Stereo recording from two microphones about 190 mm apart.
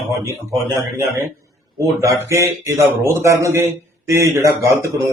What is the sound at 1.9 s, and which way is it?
A man's voice, 15° right (ahead or behind).